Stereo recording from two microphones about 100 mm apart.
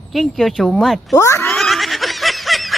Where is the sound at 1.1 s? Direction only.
30° left (ahead or behind).